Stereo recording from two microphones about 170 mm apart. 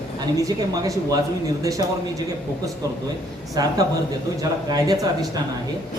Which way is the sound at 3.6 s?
25° right (ahead or behind).